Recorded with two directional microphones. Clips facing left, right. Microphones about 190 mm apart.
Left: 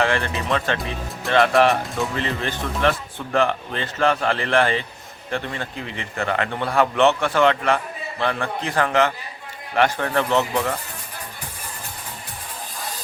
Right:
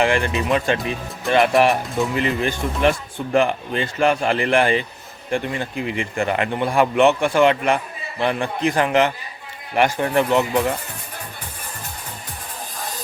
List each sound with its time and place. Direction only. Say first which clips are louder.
0.0 s a man's voice: right 3 dB; 15° right (ahead or behind)